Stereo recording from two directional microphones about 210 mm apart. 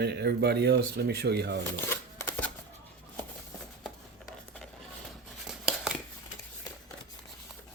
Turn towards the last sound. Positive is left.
turn(degrees=-5)  # may be behind; listen again after turning